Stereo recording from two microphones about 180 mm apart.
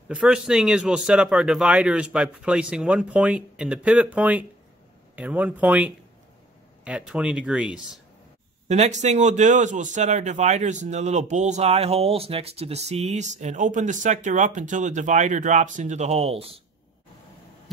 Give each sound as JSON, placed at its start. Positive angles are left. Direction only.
{"t": 0.1, "sound": "speech", "side_deg": -5}
{"t": 8.6, "sound": "a man's voice", "side_deg": -40}